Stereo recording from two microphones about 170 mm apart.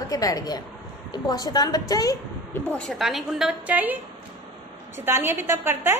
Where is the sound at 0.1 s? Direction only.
20° left (ahead or behind).